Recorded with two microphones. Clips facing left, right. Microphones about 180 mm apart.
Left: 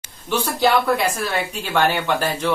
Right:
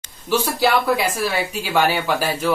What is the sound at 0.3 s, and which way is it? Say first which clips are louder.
Speech: even; 5° right (ahead or behind).